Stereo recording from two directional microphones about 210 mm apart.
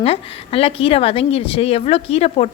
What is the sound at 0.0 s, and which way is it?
A woman's voice, 30° left (ahead or behind).